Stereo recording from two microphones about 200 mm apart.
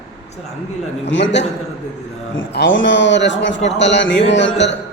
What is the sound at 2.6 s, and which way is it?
Speech, 65° left (ahead or behind).